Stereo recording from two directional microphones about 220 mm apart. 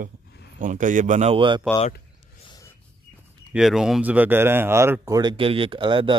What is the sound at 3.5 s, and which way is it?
Speech, centre (ahead or behind).